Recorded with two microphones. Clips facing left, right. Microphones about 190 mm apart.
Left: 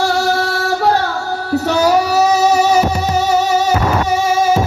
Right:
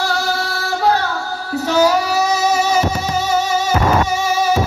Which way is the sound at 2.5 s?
40° left (ahead or behind).